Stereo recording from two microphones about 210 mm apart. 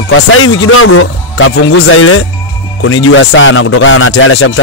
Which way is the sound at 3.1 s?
65° left (ahead or behind).